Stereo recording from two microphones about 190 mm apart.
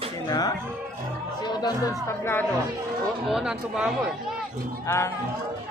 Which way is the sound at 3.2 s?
5° right (ahead or behind).